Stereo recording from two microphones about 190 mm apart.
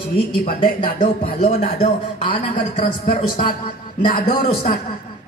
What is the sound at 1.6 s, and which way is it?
A man's voice, 45° left (ahead or behind).